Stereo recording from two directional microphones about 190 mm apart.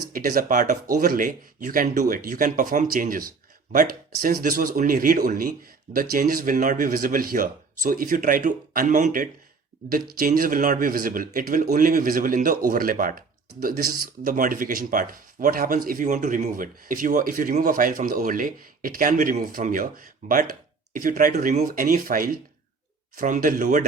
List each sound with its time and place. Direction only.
0.1 s speech: 50° right (ahead or behind)